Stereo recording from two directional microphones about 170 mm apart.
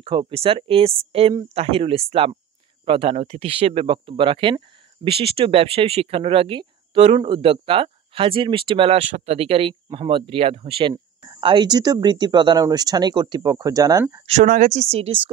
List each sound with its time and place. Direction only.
0.0 s speech: 30° right (ahead or behind)
14.2 s speech: 45° right (ahead or behind)